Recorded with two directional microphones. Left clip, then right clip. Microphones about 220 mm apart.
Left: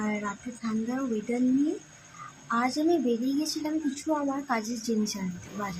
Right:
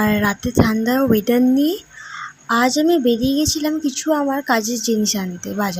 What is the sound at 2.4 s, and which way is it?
A woman's voice, 35° right (ahead or behind).